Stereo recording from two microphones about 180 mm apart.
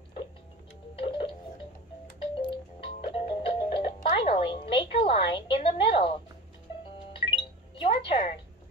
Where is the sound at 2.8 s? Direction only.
30° left (ahead or behind).